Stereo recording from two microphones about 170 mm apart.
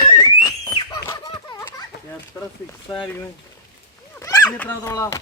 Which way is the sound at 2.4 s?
15° left (ahead or behind).